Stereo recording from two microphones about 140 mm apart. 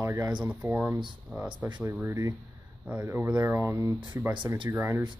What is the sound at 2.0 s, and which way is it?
Speech, 20° right (ahead or behind).